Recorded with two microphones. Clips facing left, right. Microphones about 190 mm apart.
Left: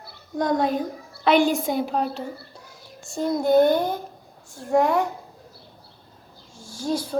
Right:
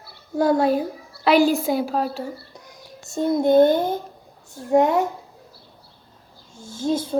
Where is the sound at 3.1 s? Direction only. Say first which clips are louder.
Right 2 dB; 25° right (ahead or behind).